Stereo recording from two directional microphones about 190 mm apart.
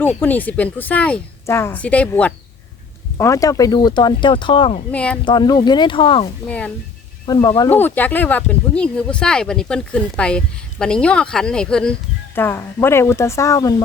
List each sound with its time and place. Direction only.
0.1 s speech: 10° left (ahead or behind); by 4.8 s 25° left (ahead or behind)
4.9 s speech: 5° left (ahead or behind)
5.2 s speech: 25° left (ahead or behind)
7.7 s speech: 10° left (ahead or behind)